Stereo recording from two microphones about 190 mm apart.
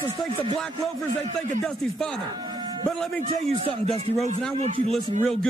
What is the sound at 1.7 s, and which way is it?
Speech, centre (ahead or behind).